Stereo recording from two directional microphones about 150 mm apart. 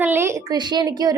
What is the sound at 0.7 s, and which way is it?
Speech, 25° right (ahead or behind).